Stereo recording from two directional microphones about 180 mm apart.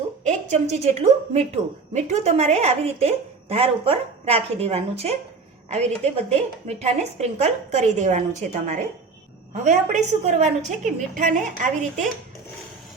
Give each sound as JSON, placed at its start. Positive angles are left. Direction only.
{"t": 0.3, "sound": "a woman's voice", "side_deg": -40}